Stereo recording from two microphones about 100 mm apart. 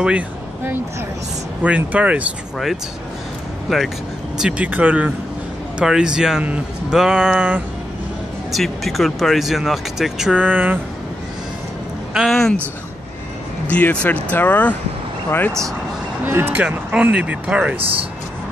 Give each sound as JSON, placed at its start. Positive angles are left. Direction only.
{"t": 1.6, "sound": "speech", "side_deg": -15}
{"t": 3.7, "sound": "speech", "side_deg": 0}
{"t": 8.5, "sound": "speech", "side_deg": 0}
{"t": 12.3, "sound": "speech", "side_deg": 5}
{"t": 13.7, "sound": "speech", "side_deg": 15}
{"t": 16.3, "sound": "speech", "side_deg": -20}
{"t": 16.6, "sound": "speech", "side_deg": -10}
{"t": 17.7, "sound": "speech", "side_deg": -65}